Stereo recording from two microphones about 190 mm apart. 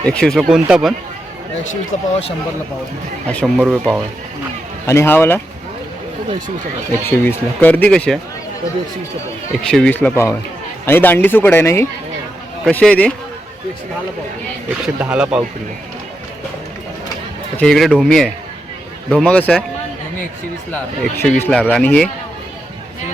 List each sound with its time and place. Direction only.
0.1 s speech: 5° left (ahead or behind)
1.9 s speech: 35° left (ahead or behind)
3.2 s speech: 5° left (ahead or behind)
4.9 s speech: 15° left (ahead or behind)
7.0 s speech: 10° left (ahead or behind)
9.6 s speech: 5° left (ahead or behind)
14.9 s speech: 5° right (ahead or behind)
17.6 s speech: centre (ahead or behind)
20.7 s speech: 5° left (ahead or behind)